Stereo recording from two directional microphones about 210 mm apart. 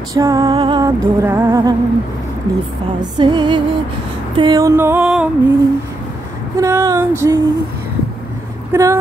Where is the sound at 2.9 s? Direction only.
20° right (ahead or behind); by 5.3 s 5° right (ahead or behind).